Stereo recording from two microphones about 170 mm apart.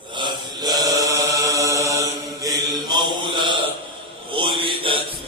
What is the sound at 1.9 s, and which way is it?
Mantra, 20° right (ahead or behind).